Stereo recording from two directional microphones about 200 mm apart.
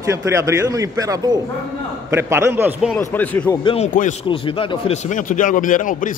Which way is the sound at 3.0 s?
10° left (ahead or behind).